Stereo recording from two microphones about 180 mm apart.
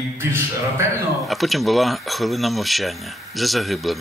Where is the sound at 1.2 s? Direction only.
Centre (ahead or behind).